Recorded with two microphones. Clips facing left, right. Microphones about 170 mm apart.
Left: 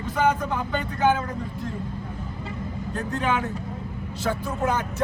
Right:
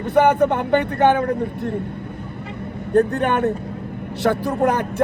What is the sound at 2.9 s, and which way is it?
Speech, 65° right (ahead or behind).